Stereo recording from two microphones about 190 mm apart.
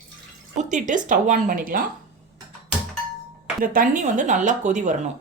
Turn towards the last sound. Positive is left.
turn(degrees=-40)  # may be behind; listen again after turning